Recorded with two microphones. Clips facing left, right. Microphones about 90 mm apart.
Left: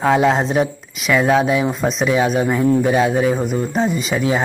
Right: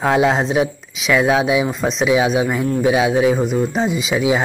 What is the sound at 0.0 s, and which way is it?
Speech, centre (ahead or behind).